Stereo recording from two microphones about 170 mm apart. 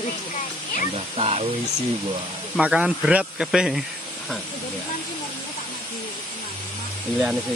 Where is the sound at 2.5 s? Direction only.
5° right (ahead or behind).